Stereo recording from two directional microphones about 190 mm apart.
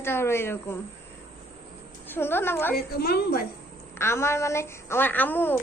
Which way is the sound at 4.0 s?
15° left (ahead or behind).